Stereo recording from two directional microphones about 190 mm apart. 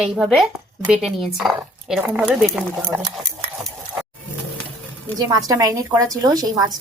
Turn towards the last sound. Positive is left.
turn(degrees=-20)  # may be behind; listen again after turning